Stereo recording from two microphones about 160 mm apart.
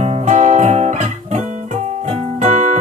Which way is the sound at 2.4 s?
55° right (ahead or behind).